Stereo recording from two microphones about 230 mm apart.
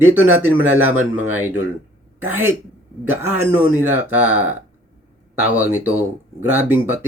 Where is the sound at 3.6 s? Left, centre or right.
Centre.